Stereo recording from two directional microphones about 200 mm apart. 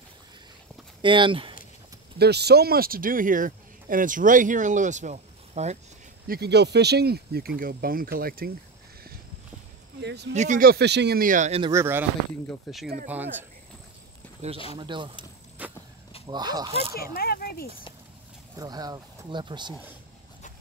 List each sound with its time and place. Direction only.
1.0 s speech: 25° right (ahead or behind)
2.1 s speech: 55° right (ahead or behind); by 5.8 s 35° right (ahead or behind)
6.2 s speech: 50° right (ahead or behind)
10.0 s speech: 55° right (ahead or behind)
10.3 s speech: 35° right (ahead or behind)
11.6 s speech: 15° right (ahead or behind)
12.4 s speech: centre (ahead or behind)
14.4 s speech: 35° right (ahead or behind)
15.6 s walk: 5° right (ahead or behind)
16.3 s speech: 20° right (ahead or behind)
16.9 s speech: 50° left (ahead or behind)
18.6 s speech: 20° right (ahead or behind)